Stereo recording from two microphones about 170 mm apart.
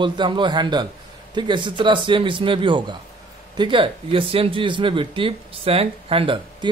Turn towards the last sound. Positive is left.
turn(degrees=-30)  # may be behind; listen again after turning